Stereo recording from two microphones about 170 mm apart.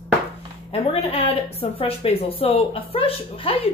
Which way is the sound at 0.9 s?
35° left (ahead or behind).